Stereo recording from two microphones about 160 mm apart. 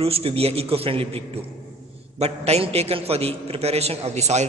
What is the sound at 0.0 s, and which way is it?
A man's voice, 35° right (ahead or behind).